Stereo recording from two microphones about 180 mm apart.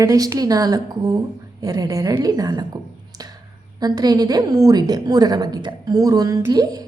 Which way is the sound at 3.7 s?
20° right (ahead or behind).